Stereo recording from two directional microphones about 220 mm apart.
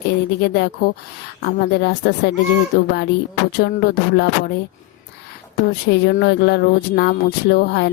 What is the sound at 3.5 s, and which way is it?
Speech, 50° left (ahead or behind).